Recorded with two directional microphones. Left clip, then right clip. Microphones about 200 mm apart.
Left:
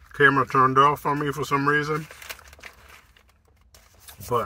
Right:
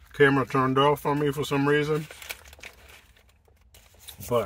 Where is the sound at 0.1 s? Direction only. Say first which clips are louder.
Left 3 dB; 20° right (ahead or behind).